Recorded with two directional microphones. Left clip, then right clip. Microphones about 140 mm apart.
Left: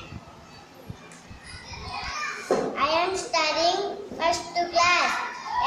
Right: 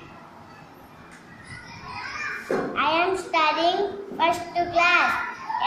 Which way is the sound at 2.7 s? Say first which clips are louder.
Right 5 dB; 30° left (ahead or behind).